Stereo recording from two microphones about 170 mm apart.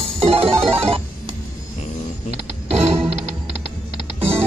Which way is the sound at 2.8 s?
35° right (ahead or behind).